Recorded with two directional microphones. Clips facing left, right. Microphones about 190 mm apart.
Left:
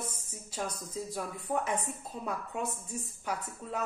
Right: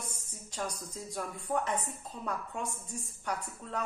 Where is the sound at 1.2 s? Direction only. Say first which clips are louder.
Right 1 dB; 10° left (ahead or behind).